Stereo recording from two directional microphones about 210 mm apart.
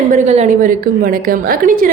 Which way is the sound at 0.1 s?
35° right (ahead or behind).